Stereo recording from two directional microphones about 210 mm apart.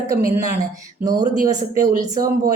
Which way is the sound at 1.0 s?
20° right (ahead or behind).